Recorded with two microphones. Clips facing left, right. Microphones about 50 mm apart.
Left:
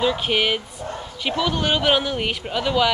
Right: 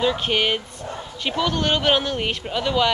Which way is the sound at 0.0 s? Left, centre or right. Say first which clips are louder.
Even; centre.